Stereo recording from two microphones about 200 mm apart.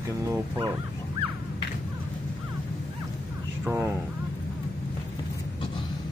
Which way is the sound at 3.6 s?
15° right (ahead or behind).